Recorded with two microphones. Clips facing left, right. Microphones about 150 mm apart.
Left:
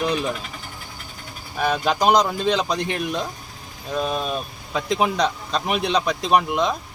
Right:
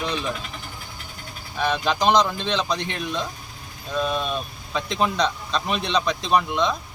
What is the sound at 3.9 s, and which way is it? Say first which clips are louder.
Speech: even; 40° left (ahead or behind).